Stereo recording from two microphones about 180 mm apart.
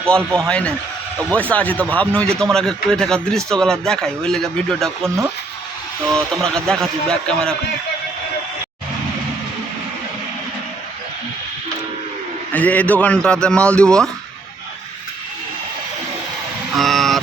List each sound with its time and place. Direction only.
0.4 s speech: 5° left (ahead or behind)
5.0 s speech: 15° right (ahead or behind)
6.1 s speech: 5° left (ahead or behind)
12.5 s speech: 10° left (ahead or behind)
16.7 s vehicle: centre (ahead or behind)